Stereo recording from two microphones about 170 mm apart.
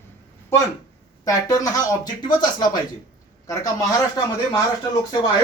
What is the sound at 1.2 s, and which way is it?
Speech, 20° left (ahead or behind).